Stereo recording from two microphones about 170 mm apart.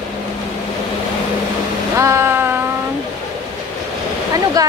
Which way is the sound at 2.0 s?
15° right (ahead or behind).